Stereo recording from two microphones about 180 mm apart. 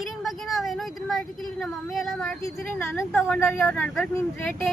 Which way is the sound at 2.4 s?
10° left (ahead or behind).